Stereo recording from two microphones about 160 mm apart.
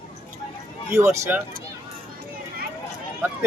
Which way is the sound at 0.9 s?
15° right (ahead or behind).